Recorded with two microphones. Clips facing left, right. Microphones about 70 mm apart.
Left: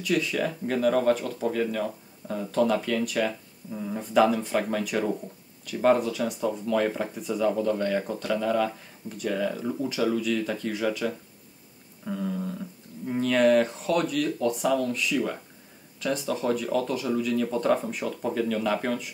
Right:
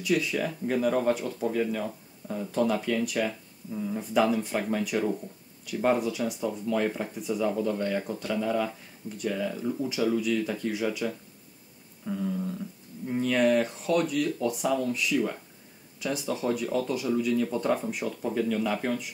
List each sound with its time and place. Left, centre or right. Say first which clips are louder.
0.0 s speech: left 1 dB; centre
3.7 s a sound: even; centre
4.0 s speech: left 4 dB; centre
9.5 s speech: left 1 dB; centre
9.8 s speech: even; centre
12.0 s a sound: even; centre
13.2 s speech: left 3 dB; centre